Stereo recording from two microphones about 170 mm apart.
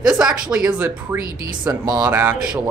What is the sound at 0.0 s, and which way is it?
Speech, 5° right (ahead or behind).